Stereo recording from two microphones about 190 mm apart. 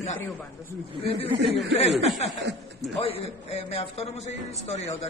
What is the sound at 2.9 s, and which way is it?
A man's voice, 30° left (ahead or behind).